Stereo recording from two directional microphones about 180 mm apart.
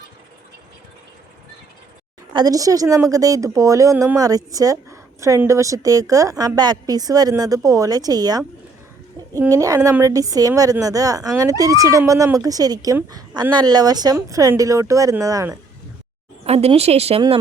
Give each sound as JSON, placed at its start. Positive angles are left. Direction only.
{"t": 2.3, "sound": "a woman's voice", "side_deg": -20}
{"t": 16.5, "sound": "a woman's voice", "side_deg": -35}